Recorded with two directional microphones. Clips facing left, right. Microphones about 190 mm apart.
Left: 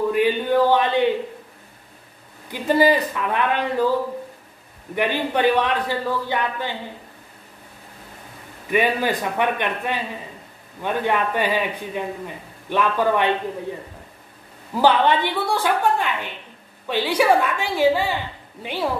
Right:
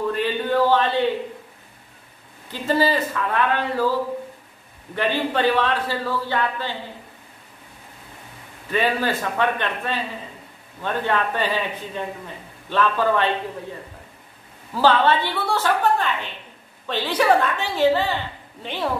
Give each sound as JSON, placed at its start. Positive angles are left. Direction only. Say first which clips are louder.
{"t": 0.1, "sound": "speech", "louder": "left 3 dB", "side_deg": 15}
{"t": 2.5, "sound": "a woman's voice", "louder": "left 3 dB", "side_deg": 15}
{"t": 4.9, "sound": "a woman's voice", "louder": "left 1 dB", "side_deg": 15}
{"t": 8.6, "sound": "a woman's voice", "louder": "left 2 dB", "side_deg": 15}
{"t": 14.7, "sound": "a woman's voice", "louder": "left 1 dB", "side_deg": 15}